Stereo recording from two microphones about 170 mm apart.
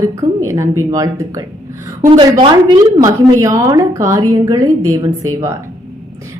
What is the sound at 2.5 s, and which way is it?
A woman's voice, 25° right (ahead or behind).